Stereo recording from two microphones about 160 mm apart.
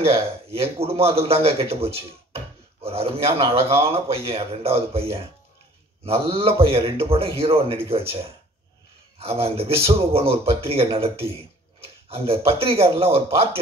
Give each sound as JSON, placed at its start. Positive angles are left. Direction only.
{"t": 0.0, "sound": "speech", "side_deg": -40}
{"t": 9.2, "sound": "speech", "side_deg": -40}